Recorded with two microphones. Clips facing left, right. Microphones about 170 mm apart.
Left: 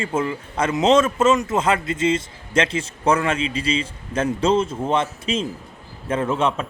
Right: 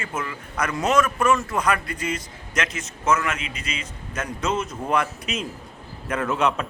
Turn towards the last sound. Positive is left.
turn(degrees=30)  # may be behind; listen again after turning